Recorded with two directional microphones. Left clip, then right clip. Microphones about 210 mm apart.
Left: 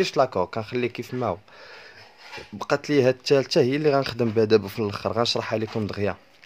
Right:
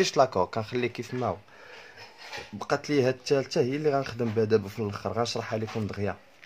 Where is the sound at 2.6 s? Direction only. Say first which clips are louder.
Left 5 dB; 25° left (ahead or behind).